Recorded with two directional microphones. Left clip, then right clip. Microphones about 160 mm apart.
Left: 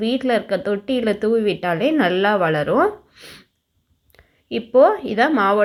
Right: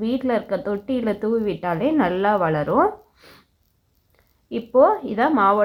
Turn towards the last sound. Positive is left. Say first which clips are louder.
# left 1 dB
turn(degrees=20)  # may be behind; listen again after turning